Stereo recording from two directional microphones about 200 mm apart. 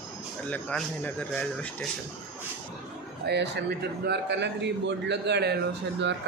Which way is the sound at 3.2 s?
55° right (ahead or behind).